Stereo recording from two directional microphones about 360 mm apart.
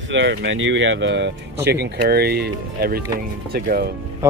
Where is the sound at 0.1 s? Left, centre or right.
Right.